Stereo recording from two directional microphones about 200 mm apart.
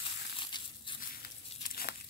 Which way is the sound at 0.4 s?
25° left (ahead or behind).